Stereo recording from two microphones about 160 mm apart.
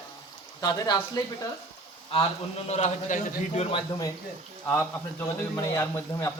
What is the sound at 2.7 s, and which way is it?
A man's voice, 45° left (ahead or behind).